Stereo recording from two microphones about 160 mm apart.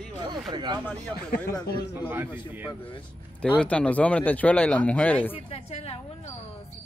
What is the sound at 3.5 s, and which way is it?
Speech, 5° left (ahead or behind).